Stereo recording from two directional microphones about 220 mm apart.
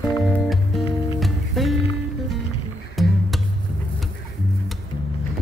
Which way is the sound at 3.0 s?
Centre (ahead or behind).